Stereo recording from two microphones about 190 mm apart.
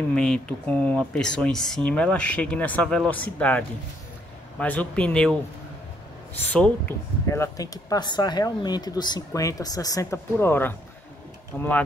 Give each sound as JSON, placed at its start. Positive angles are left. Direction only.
{"t": 0.1, "sound": "speech", "side_deg": 5}
{"t": 6.3, "sound": "speech", "side_deg": 10}